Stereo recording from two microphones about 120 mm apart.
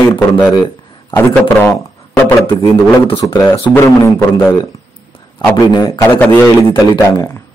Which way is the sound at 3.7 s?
20° left (ahead or behind).